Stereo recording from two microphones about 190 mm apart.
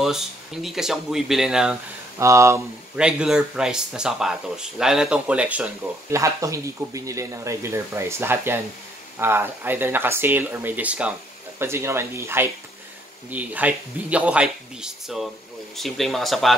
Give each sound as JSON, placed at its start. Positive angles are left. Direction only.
{"t": 0.0, "sound": "speech", "side_deg": 0}
{"t": 2.1, "sound": "speech", "side_deg": -15}
{"t": 3.0, "sound": "speech", "side_deg": -5}